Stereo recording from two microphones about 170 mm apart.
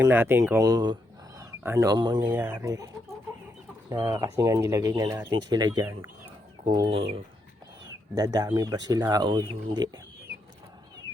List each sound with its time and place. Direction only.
0.0 s speech: 10° right (ahead or behind)
2.2 s speech: 10° right (ahead or behind)
6.7 s speech: 25° right (ahead or behind)
8.1 s speech: 20° right (ahead or behind)